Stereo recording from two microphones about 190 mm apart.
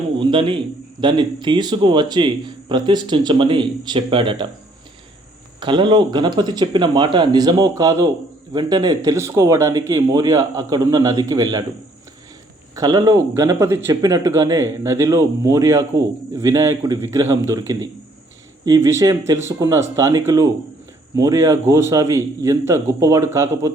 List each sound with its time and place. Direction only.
0.2 s a man's voice: 25° right (ahead or behind)
5.5 s speech: 25° right (ahead or behind)
12.7 s speech: 20° right (ahead or behind)